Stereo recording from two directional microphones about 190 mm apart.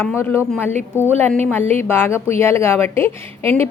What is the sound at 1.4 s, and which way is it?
A woman's voice, 10° left (ahead or behind).